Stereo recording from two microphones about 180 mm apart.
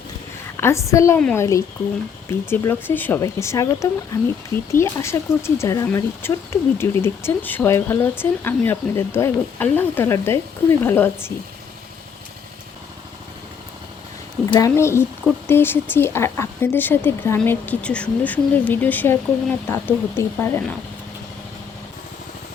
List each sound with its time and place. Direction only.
0.5 s speech: 15° left (ahead or behind)
14.4 s speech: 20° left (ahead or behind)